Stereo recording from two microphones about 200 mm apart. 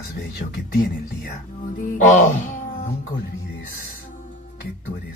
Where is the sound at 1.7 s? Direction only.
40° left (ahead or behind).